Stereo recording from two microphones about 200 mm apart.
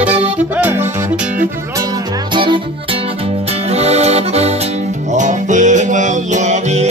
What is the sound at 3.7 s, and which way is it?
Accordion, 30° right (ahead or behind).